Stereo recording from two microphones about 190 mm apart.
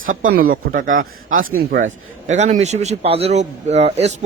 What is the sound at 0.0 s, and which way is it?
Speech, 45° right (ahead or behind).